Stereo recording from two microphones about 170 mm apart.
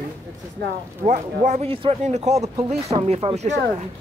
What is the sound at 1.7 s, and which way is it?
Speech, 35° right (ahead or behind).